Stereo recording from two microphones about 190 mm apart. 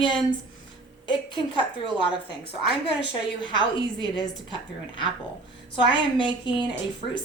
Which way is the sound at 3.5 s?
25° left (ahead or behind).